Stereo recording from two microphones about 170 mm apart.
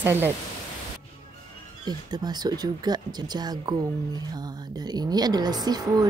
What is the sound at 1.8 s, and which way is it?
Speech, 25° right (ahead or behind).